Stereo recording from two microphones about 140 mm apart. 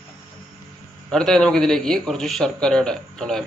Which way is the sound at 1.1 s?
5° left (ahead or behind).